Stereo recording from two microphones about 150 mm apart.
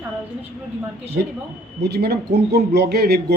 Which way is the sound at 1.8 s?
90° right.